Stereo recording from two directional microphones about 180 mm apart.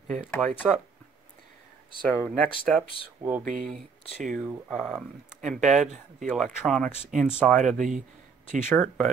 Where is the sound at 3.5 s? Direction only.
50° right (ahead or behind).